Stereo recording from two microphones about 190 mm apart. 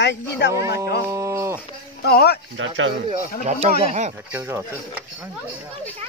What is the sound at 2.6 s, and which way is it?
Speech, 90° right.